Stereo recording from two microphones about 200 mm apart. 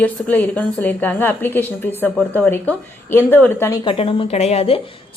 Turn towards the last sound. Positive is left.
turn(degrees=30)  # may be behind; listen again after turning